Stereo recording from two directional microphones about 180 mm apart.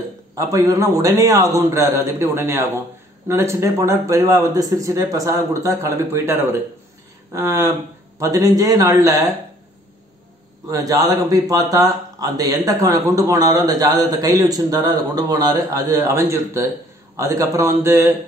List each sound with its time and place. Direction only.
0.4 s a man's voice: 20° right (ahead or behind)
10.7 s a man's voice: 20° right (ahead or behind)